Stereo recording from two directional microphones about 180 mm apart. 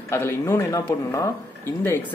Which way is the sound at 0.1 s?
15° left (ahead or behind).